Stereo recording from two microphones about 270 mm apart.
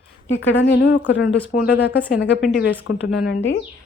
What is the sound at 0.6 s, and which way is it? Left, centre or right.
Speech, left.